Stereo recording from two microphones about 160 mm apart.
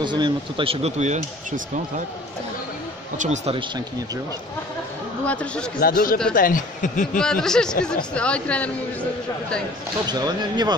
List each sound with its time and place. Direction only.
0.0 s speech: 30° right (ahead or behind); by 1.2 s 45° right (ahead or behind)
3.2 s speech: 45° right (ahead or behind)
5.2 s speech: 10° left (ahead or behind)
5.8 s speech: 65° left (ahead or behind)
7.2 s speech: 5° left (ahead or behind)
10.0 s speech: 25° right (ahead or behind)